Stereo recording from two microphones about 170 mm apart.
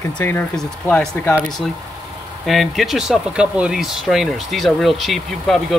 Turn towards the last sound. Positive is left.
turn(degrees=0)  # may be behind; listen again after turning